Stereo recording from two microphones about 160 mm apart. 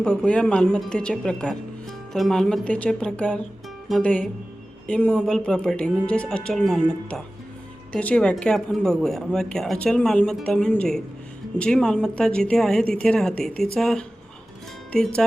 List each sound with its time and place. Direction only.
0.0 s speech: centre (ahead or behind)